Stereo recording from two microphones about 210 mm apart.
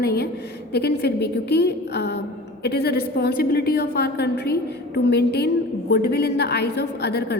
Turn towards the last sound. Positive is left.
turn(degrees=50)  # may be behind; listen again after turning